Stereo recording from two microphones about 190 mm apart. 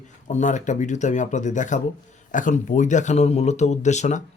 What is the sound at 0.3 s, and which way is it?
Speech, 40° left (ahead or behind).